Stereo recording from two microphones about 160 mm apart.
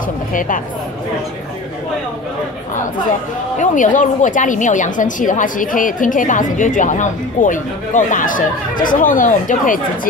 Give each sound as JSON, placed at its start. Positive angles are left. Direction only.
{"t": 0.3, "sound": "speech", "side_deg": 55}
{"t": 3.5, "sound": "a woman's voice", "side_deg": 55}